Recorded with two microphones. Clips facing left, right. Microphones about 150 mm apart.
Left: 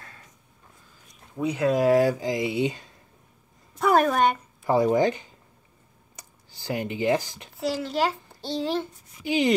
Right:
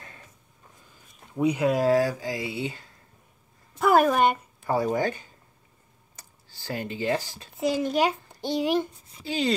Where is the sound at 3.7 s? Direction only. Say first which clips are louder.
Right 1 dB; centre (ahead or behind).